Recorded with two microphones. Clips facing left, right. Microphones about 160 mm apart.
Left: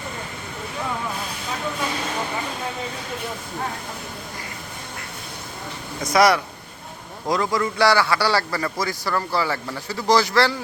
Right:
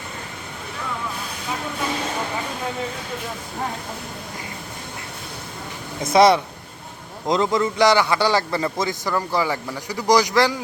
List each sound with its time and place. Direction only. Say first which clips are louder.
6.1 s a man's voice: right 3 dB; 25° right (ahead or behind)